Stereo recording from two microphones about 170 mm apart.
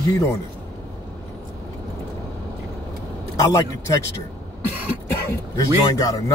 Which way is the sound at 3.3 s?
20° left (ahead or behind).